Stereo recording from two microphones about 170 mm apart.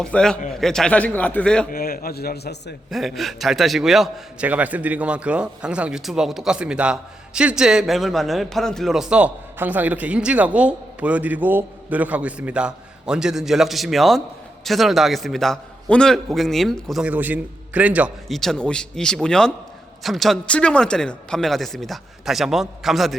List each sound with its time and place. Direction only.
0.0 s a man's voice: 5° left (ahead or behind)
1.7 s a man's voice: 60° left (ahead or behind)
2.9 s a man's voice: centre (ahead or behind)